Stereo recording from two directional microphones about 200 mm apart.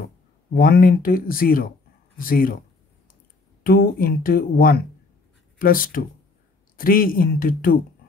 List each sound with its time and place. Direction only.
0.5 s speech: 50° left (ahead or behind)
3.6 s speech: 45° left (ahead or behind)